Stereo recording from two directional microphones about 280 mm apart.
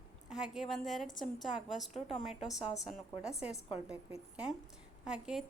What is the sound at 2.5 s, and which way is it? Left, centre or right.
A woman's voice, centre.